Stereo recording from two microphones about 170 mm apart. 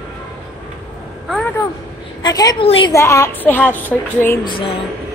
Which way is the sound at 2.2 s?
20° left (ahead or behind).